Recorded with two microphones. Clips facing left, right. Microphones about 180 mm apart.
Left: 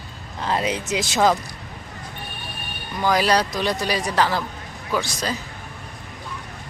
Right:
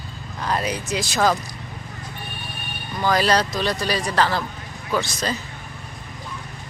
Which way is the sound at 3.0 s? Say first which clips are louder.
Even; 10° left (ahead or behind).